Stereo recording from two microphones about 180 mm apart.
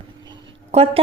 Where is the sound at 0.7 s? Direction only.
35° right (ahead or behind).